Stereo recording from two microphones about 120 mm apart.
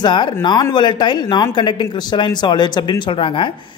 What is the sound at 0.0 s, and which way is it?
Speech, 40° left (ahead or behind).